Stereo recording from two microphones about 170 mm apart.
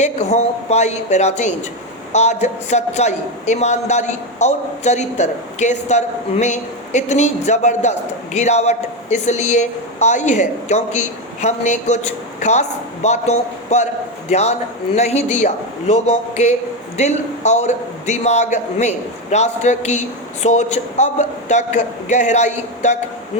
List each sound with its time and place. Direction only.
0.0 s a man's voice: 40° left (ahead or behind)